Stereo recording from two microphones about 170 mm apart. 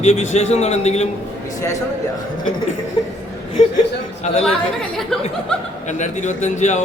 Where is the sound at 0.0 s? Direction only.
40° left (ahead or behind).